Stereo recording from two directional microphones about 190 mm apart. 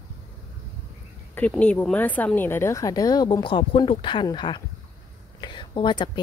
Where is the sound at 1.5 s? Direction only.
5° left (ahead or behind).